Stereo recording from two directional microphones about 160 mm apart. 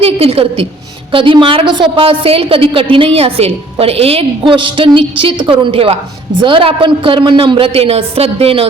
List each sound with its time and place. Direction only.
0.0 s a woman's voice: 35° right (ahead or behind)